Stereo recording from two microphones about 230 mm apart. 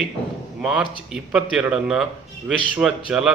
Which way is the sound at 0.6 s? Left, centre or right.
Centre.